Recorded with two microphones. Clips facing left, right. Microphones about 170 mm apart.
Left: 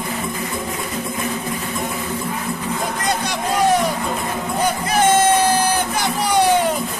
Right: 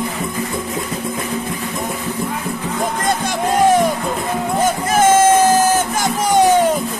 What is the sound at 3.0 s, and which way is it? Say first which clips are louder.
Music: right 3 dB; 50° right (ahead or behind).